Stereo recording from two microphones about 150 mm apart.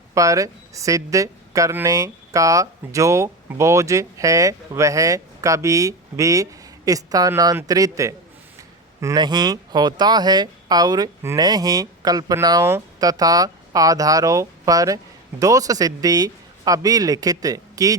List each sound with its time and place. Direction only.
0.1 s speech: 20° right (ahead or behind)